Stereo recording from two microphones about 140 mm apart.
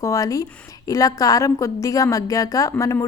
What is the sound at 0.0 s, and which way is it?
A woman's voice, 25° left (ahead or behind).